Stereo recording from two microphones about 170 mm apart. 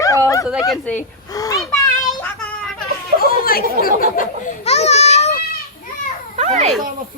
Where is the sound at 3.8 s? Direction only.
55° left (ahead or behind).